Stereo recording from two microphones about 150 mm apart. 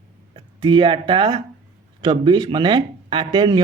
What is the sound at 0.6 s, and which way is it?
Speech, 35° right (ahead or behind).